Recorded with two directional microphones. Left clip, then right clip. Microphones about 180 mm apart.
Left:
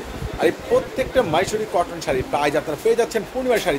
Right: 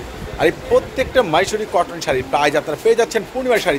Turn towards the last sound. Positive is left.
turn(degrees=5)  # may be behind; listen again after turning